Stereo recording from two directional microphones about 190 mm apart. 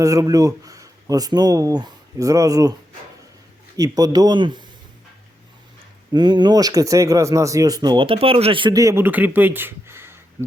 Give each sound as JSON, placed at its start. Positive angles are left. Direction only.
{"t": 0.0, "sound": "speech", "side_deg": -15}
{"t": 3.8, "sound": "speech", "side_deg": -20}
{"t": 6.1, "sound": "speech", "side_deg": -25}